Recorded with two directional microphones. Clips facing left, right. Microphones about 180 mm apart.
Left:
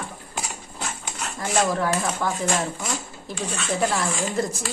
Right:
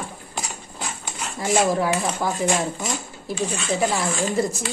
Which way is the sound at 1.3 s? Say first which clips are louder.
Right 3 dB; 15° right (ahead or behind).